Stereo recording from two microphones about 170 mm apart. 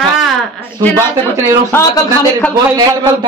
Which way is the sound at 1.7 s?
10° left (ahead or behind).